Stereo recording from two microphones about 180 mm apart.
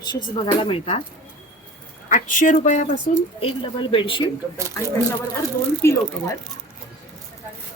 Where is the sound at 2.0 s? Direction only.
45° left (ahead or behind).